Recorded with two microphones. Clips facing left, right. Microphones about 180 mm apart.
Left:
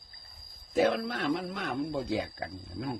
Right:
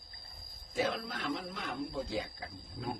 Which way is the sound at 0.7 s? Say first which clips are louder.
Left 8 dB; 65° left (ahead or behind).